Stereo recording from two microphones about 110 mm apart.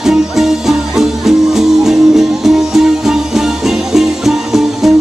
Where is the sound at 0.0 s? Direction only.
5° right (ahead or behind).